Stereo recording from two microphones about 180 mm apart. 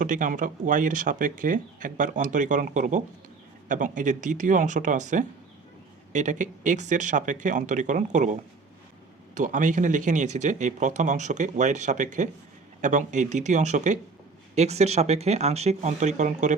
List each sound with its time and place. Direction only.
0.0 s speech: 45° right (ahead or behind)